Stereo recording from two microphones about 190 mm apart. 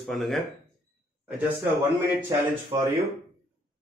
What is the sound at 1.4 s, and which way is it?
Speech, 10° right (ahead or behind).